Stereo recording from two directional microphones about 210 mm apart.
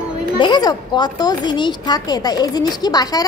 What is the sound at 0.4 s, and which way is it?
Speech, 20° left (ahead or behind).